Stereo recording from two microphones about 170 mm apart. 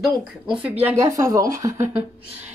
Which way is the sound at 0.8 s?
20° right (ahead or behind).